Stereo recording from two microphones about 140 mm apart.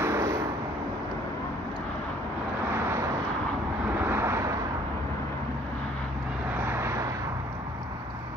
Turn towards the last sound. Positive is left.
turn(degrees=-20)  # may be behind; listen again after turning